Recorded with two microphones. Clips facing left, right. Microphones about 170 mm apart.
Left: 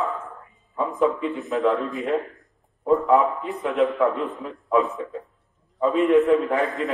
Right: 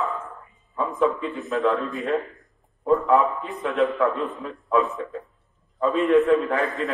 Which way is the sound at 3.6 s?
20° left (ahead or behind).